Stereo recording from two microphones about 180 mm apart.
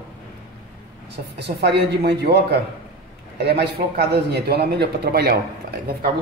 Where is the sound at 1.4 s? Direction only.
65° right (ahead or behind).